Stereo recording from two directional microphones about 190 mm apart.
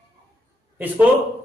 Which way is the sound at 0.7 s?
10° right (ahead or behind).